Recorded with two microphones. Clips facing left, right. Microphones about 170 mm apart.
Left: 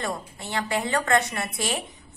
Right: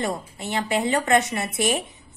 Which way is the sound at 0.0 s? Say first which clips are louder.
Right 4 dB; 20° right (ahead or behind).